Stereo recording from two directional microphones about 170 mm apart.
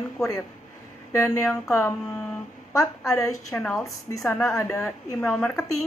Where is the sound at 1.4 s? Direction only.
5° left (ahead or behind).